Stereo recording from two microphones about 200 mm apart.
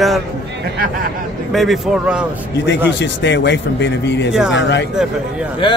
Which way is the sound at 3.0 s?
60° left (ahead or behind).